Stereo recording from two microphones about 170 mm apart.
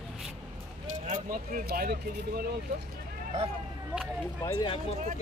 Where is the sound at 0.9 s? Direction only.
50° right (ahead or behind).